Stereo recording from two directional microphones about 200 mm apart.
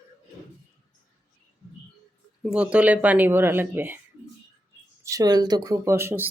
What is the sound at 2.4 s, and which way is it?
Speech, 5° right (ahead or behind).